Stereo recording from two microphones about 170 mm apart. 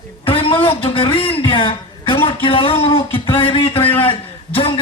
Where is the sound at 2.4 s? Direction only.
30° left (ahead or behind).